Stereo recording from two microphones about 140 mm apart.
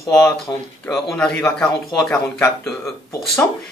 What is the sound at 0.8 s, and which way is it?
Speech, 5° left (ahead or behind).